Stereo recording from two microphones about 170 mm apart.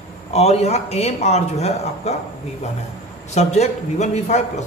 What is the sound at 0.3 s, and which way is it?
Speech, 40° left (ahead or behind).